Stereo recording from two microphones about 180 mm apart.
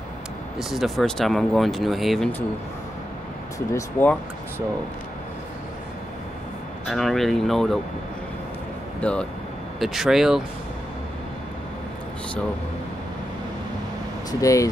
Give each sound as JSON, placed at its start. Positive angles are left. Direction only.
{"t": 0.6, "sound": "speech", "side_deg": 0}
{"t": 3.5, "sound": "speech", "side_deg": 15}
{"t": 6.9, "sound": "speech", "side_deg": 0}
{"t": 9.0, "sound": "speech", "side_deg": 5}
{"t": 14.4, "sound": "speech", "side_deg": 20}